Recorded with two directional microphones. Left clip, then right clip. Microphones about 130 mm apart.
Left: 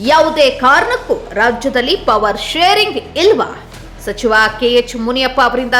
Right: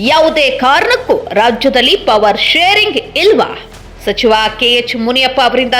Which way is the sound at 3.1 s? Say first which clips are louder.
Right 2 dB; 25° right (ahead or behind).